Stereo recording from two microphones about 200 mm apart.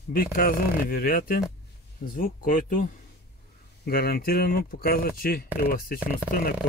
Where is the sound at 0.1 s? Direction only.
45° left (ahead or behind).